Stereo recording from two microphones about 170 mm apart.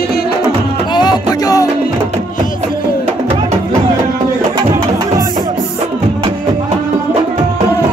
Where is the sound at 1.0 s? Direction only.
25° left (ahead or behind).